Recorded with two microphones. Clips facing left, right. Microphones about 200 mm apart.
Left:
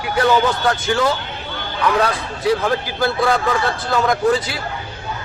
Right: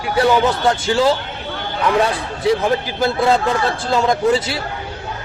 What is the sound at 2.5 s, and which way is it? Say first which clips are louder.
A man's voice: right 2 dB; 20° right (ahead or behind).